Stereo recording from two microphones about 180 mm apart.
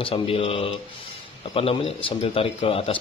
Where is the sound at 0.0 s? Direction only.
30° left (ahead or behind).